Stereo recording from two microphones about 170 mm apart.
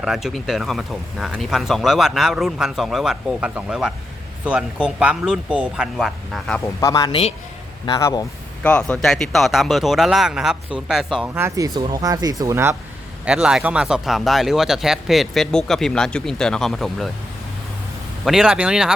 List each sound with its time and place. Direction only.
0.0 s speech: centre (ahead or behind)
6.7 s speech: 20° left (ahead or behind)
7.1 s a man's voice: 35° left (ahead or behind)
7.9 s speech: 20° left (ahead or behind)
8.6 s speech: 5° left (ahead or behind)
11.3 s speech: 15° right (ahead or behind)
13.2 s speech: 5° right (ahead or behind)
18.3 s speech: 5° right (ahead or behind)